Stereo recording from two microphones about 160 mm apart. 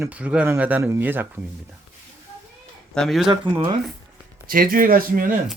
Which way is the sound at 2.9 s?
Centre (ahead or behind).